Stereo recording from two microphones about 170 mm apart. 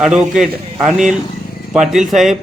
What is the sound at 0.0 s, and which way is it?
A man's voice, centre (ahead or behind).